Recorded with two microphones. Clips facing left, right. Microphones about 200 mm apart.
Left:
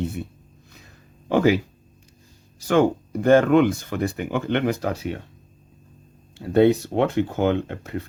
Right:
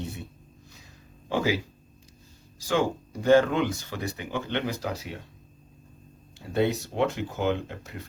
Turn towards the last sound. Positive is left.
turn(degrees=60)  # may be behind; listen again after turning